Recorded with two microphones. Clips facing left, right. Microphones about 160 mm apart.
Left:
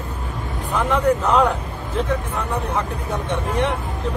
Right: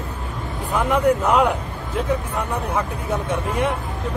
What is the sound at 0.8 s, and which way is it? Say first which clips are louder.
Speech: right 1 dB; 10° right (ahead or behind).